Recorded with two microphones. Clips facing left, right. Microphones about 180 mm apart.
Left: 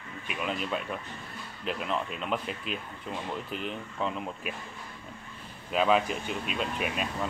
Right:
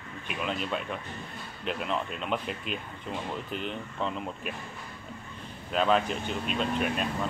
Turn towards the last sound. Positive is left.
turn(degrees=5)  # may be behind; listen again after turning